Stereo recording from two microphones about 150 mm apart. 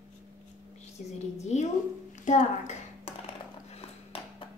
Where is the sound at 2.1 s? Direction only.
55° left (ahead or behind).